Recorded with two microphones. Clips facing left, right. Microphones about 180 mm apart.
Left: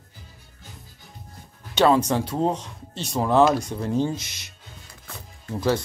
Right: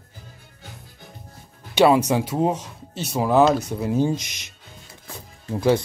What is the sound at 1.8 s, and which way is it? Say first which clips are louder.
Speech: right 2 dB; 10° right (ahead or behind).